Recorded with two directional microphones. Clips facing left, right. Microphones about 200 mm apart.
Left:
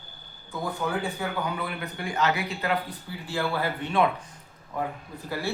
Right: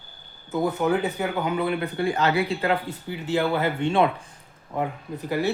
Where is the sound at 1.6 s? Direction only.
30° right (ahead or behind).